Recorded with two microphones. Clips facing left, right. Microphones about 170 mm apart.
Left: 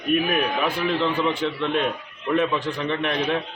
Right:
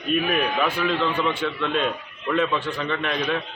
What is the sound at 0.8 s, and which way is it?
A man's voice, 20° left (ahead or behind).